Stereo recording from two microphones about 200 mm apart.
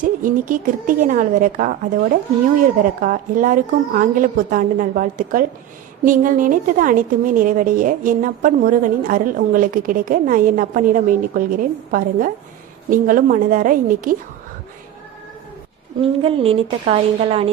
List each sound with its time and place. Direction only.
0.0 s a woman's voice: 40° right (ahead or behind)
16.0 s a woman's voice: 30° right (ahead or behind)